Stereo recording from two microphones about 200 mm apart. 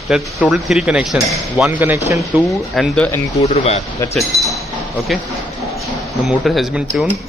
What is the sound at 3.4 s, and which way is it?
Speech, 30° left (ahead or behind).